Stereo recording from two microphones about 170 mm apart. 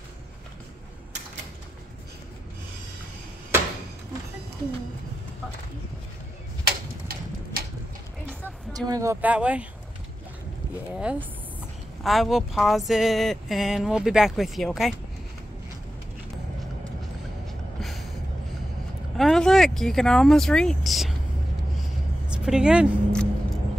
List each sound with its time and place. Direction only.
6.6 s tick-tock: 60° right (ahead or behind)
8.7 s speech: 20° right (ahead or behind)
11.0 s speech: 5° right (ahead or behind)
17.5 s a sound: centre (ahead or behind)
19.1 s speech: centre (ahead or behind)
22.3 s single-lens reflex camera: 5° right (ahead or behind)